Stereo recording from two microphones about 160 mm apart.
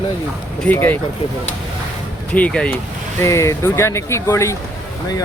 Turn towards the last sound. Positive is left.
turn(degrees=20)  # may be behind; listen again after turning